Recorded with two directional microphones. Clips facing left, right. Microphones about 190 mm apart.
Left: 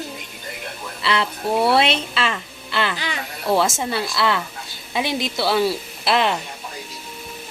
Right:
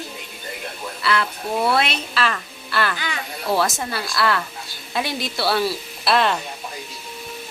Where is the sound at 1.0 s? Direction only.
25° left (ahead or behind).